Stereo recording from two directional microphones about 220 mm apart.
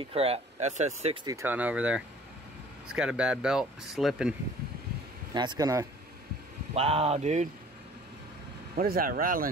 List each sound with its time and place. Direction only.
0.0 s speech: 25° right (ahead or behind)
1.2 s speech: 15° right (ahead or behind)
5.3 s speech: 20° right (ahead or behind)
6.7 s speech: 25° right (ahead or behind)
8.7 s speech: 40° right (ahead or behind)